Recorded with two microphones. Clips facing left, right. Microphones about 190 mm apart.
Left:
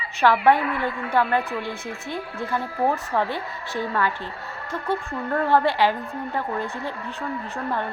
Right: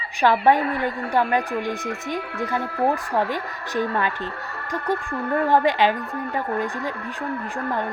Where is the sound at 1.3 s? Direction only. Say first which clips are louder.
Right 2 dB; 15° right (ahead or behind).